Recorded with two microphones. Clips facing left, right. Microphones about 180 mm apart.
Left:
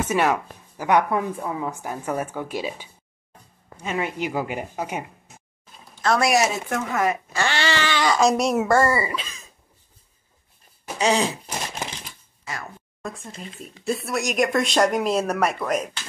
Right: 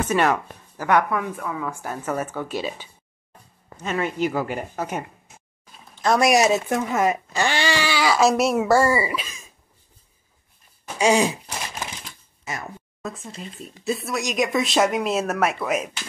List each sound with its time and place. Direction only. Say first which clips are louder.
0.0 s speech: right 1 dB; 10° left (ahead or behind)
1.3 s speech: left 1 dB; 30° left (ahead or behind); by 5.0 s 10° left (ahead or behind)
6.0 s speech: right 2 dB; 15° right (ahead or behind)
11.0 s a sound: right 3 dB; 10° right (ahead or behind)
12.5 s a woman's voice: right 2 dB; 20° right (ahead or behind)
13.0 s speech: right 1 dB; centre (ahead or behind)